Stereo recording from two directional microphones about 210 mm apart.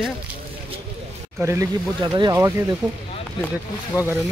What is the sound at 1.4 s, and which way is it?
Speech, 15° right (ahead or behind).